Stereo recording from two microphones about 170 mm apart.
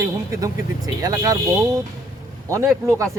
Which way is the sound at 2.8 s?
15° right (ahead or behind).